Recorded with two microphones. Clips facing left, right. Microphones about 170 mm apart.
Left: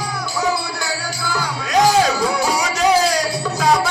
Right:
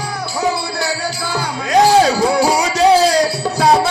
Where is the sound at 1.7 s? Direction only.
30° right (ahead or behind).